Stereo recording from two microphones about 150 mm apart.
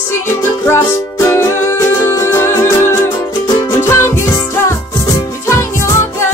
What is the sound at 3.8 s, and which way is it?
Music, 20° left (ahead or behind).